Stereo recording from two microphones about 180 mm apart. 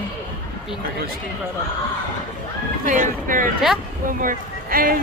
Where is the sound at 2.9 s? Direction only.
50° right (ahead or behind).